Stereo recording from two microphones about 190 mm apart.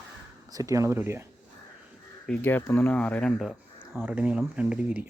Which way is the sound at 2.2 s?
10° left (ahead or behind).